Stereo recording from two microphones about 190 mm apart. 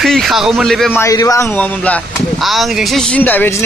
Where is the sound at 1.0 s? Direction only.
15° left (ahead or behind).